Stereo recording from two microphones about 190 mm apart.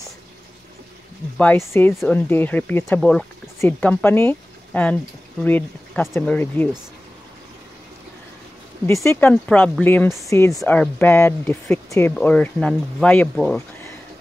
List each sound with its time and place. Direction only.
1.4 s speech: 10° left (ahead or behind)
8.8 s speech: 15° left (ahead or behind)